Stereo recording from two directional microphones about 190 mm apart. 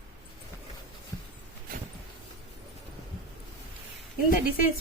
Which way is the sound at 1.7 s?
50° right (ahead or behind).